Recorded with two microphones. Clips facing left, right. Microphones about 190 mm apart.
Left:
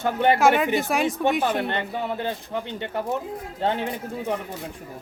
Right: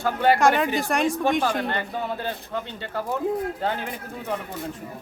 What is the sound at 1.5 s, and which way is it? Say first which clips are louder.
Speech: left 1 dB; 20° left (ahead or behind).